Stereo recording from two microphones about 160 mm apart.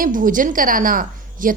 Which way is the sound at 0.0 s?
55° right (ahead or behind).